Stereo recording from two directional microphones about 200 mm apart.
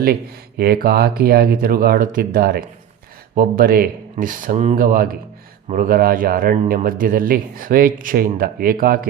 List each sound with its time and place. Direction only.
0.0 s speech: 50° right (ahead or behind)